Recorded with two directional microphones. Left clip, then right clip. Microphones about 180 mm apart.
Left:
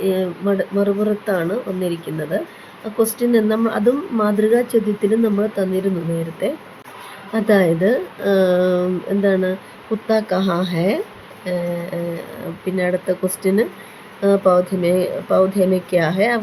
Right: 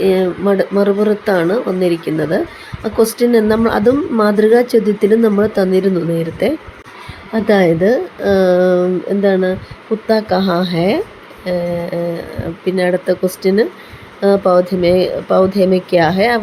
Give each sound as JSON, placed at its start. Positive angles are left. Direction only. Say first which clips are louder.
{"t": 0.0, "sound": "speech", "louder": "right 6 dB", "side_deg": -20}